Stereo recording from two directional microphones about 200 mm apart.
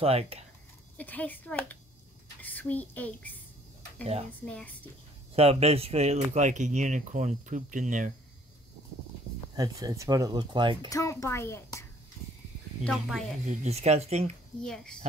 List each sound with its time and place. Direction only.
0.0 s speech: 30° right (ahead or behind)
0.9 s a child's voice: 10° left (ahead or behind)
4.5 s a child's voice: 5° left (ahead or behind)
5.3 s speech: 30° right (ahead or behind)
9.6 s speech: 15° right (ahead or behind)
10.9 s a child's voice: 15° left (ahead or behind)
12.8 s speech: centre (ahead or behind)
13.5 s speech: 35° right (ahead or behind)
14.6 s speech: 5° left (ahead or behind)